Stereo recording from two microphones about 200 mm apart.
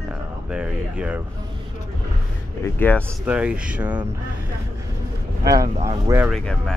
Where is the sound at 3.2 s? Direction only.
5° right (ahead or behind).